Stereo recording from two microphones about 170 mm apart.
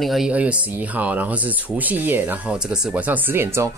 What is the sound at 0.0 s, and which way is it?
Speech, centre (ahead or behind).